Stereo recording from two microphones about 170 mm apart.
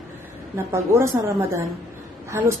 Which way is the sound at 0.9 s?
15° right (ahead or behind).